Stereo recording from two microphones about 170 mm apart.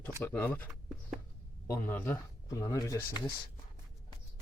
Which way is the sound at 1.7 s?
10° left (ahead or behind).